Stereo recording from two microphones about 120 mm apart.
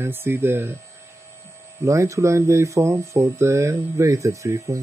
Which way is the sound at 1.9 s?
25° right (ahead or behind).